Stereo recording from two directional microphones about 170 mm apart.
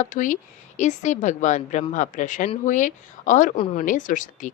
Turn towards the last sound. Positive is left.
turn(degrees=50)  # may be behind; listen again after turning